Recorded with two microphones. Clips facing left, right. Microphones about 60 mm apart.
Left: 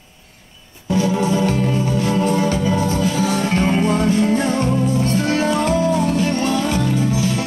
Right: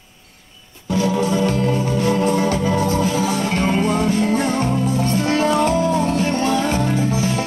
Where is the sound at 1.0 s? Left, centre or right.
Left.